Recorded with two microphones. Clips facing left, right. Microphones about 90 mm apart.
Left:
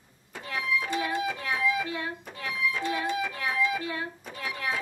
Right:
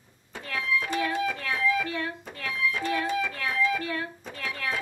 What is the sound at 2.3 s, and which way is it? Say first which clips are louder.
Music: right 1 dB; 15° left (ahead or behind).